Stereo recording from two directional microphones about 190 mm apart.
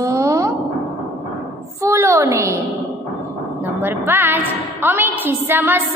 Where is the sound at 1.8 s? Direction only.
15° right (ahead or behind).